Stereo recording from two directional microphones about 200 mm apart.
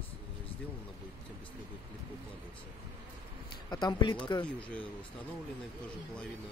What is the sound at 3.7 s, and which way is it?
Speech, 20° left (ahead or behind).